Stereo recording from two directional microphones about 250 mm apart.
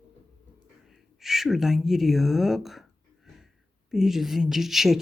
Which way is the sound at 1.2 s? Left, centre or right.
Centre.